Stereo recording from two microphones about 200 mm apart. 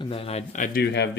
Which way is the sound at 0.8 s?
60° left (ahead or behind).